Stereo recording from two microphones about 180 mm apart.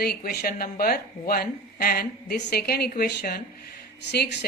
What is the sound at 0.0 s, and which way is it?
Speech, 60° left (ahead or behind).